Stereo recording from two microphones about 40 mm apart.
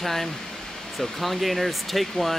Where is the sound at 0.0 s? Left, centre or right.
Centre.